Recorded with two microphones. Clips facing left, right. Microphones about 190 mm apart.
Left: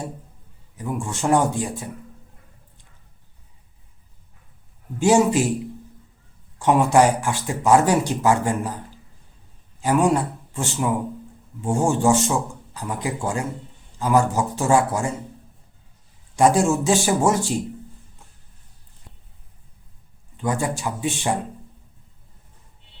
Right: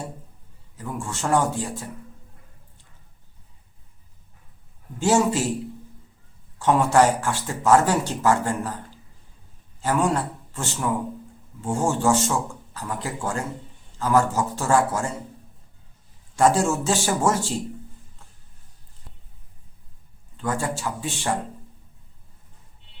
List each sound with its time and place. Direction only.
0.8 s speech: 15° left (ahead or behind)
4.9 s speech: 15° left (ahead or behind)
6.6 s speech: 15° left (ahead or behind)
9.8 s speech: 15° left (ahead or behind)
16.3 s speech: 15° left (ahead or behind)
20.3 s speech: 15° left (ahead or behind)